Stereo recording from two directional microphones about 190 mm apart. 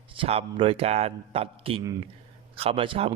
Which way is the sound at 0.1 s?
30° right (ahead or behind).